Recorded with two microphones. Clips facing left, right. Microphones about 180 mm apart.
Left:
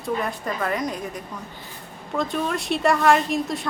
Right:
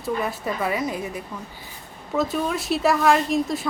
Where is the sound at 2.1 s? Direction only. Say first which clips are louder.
Right 1 dB; 5° right (ahead or behind).